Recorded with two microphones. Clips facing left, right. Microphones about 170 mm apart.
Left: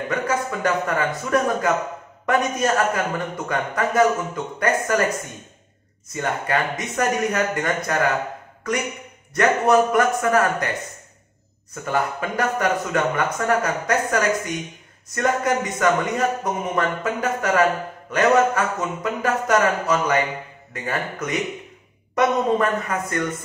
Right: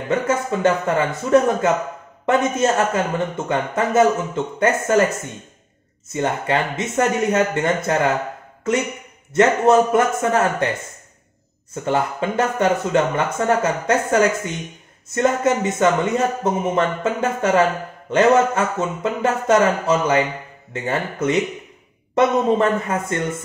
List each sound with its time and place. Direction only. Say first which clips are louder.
0.1 s speech: right 5 dB; 25° right (ahead or behind)
11.7 s speech: right 3 dB; 25° right (ahead or behind)